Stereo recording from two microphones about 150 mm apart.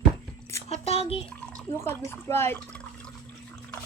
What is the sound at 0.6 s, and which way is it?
Speech, 45° left (ahead or behind).